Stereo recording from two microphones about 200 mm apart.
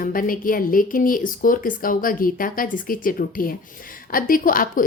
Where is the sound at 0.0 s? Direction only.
45° left (ahead or behind).